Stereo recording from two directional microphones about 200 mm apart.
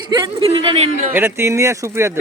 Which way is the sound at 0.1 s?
25° right (ahead or behind).